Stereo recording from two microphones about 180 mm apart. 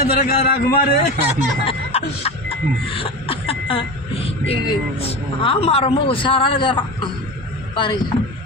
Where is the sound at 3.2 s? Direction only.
30° left (ahead or behind).